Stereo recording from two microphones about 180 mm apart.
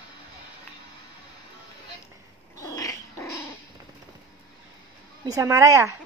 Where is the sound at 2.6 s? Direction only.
20° left (ahead or behind).